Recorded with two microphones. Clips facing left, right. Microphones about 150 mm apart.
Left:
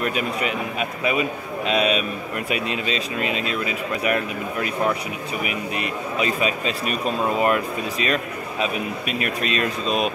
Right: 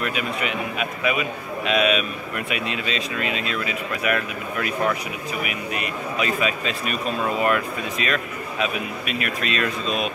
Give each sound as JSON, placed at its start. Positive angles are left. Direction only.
{"t": 0.0, "sound": "a man's voice", "side_deg": 35}